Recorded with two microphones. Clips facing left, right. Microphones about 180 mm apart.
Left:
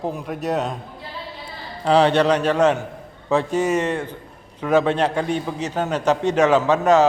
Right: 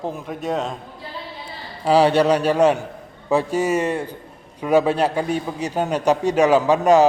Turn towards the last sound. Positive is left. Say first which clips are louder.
# right 1 dB
turn(degrees=-15)  # may be behind; listen again after turning